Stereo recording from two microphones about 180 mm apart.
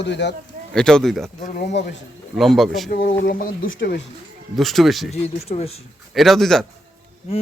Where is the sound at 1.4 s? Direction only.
45° left (ahead or behind).